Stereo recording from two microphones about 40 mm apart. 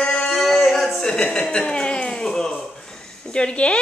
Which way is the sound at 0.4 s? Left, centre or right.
Centre.